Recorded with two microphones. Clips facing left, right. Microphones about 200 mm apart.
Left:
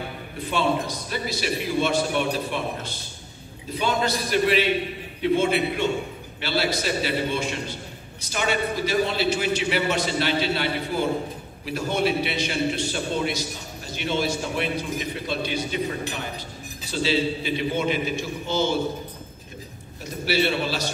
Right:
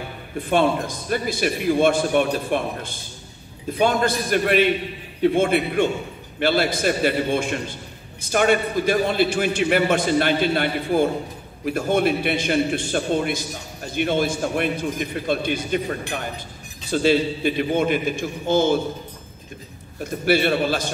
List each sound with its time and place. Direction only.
0.5 s a man's voice: 50° right (ahead or behind)
20.0 s a man's voice: 50° right (ahead or behind)